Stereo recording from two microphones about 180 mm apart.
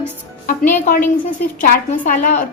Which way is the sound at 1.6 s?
45° left (ahead or behind).